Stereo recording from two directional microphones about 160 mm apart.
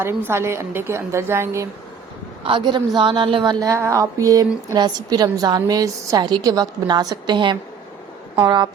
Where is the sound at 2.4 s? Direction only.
30° right (ahead or behind).